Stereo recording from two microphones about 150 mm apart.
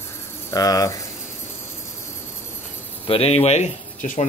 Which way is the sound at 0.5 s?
25° left (ahead or behind).